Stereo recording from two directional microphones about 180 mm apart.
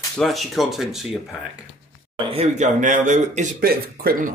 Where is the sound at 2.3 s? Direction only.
40° right (ahead or behind).